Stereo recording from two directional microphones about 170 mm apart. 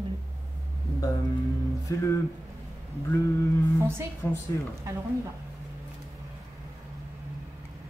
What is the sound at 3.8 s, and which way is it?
Speech, 15° right (ahead or behind).